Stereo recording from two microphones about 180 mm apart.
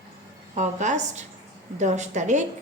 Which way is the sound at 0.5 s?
40° right (ahead or behind).